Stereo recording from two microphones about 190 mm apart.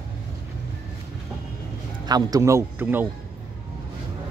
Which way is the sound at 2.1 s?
20° right (ahead or behind).